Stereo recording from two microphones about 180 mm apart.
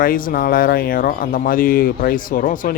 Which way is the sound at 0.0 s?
50° left (ahead or behind).